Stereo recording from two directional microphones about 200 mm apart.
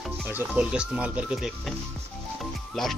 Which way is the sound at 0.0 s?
5° right (ahead or behind).